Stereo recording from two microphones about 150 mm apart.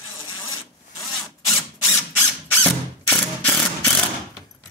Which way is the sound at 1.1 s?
Centre (ahead or behind).